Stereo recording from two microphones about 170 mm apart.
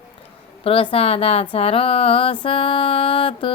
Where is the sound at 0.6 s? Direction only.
35° left (ahead or behind).